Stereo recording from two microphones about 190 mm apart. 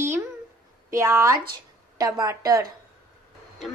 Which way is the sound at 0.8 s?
15° right (ahead or behind).